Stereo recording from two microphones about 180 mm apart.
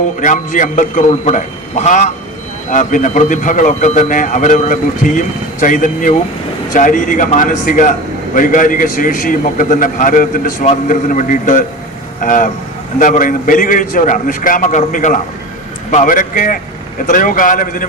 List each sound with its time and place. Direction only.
0.2 s a man's voice: 45° left (ahead or behind)